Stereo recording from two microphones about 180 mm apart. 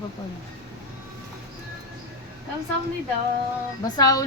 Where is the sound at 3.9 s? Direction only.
20° left (ahead or behind).